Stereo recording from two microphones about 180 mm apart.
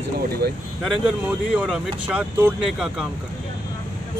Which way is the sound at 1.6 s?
5° right (ahead or behind).